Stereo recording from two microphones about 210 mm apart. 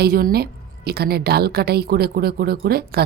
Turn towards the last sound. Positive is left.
turn(degrees=-45)  # may be behind; listen again after turning